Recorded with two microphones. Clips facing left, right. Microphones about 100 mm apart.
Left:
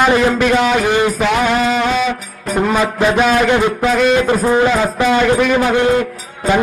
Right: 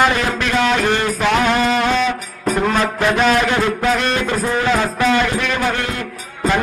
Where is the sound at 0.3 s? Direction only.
5° left (ahead or behind).